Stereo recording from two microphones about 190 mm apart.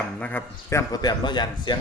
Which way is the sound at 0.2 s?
10° left (ahead or behind).